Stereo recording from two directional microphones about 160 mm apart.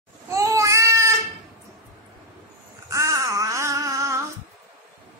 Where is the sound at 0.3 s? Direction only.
20° right (ahead or behind).